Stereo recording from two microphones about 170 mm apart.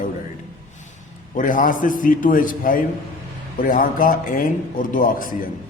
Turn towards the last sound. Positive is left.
turn(degrees=55)  # may be behind; listen again after turning